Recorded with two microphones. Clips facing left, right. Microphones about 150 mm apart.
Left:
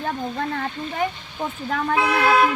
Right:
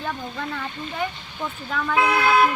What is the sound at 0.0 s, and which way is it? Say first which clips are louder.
Speech: left 4 dB; 45° left (ahead or behind).